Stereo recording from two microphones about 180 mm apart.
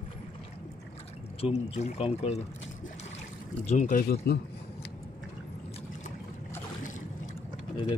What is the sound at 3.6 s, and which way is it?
Speech, 40° left (ahead or behind).